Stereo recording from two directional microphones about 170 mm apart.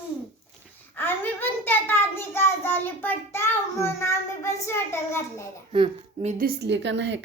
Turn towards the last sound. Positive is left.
turn(degrees=-90)